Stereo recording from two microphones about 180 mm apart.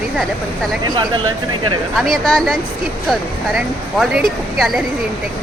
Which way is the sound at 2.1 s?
Centre (ahead or behind).